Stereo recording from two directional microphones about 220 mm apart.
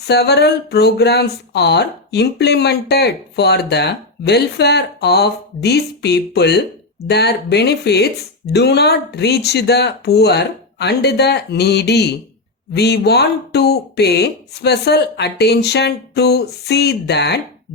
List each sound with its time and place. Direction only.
0.1 s speech: 50° left (ahead or behind)